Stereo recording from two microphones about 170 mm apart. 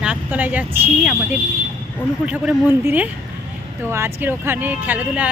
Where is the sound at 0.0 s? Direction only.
10° right (ahead or behind).